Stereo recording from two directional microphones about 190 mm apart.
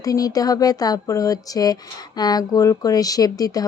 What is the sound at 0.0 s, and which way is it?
A woman's voice, 20° left (ahead or behind).